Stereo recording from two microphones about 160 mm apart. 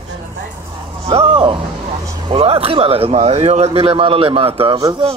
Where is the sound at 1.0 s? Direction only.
35° right (ahead or behind).